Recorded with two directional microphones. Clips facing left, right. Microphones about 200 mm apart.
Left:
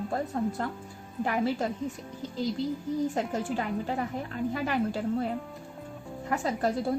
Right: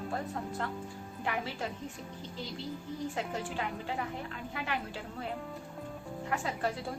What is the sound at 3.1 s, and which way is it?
A woman's voice, 40° left (ahead or behind).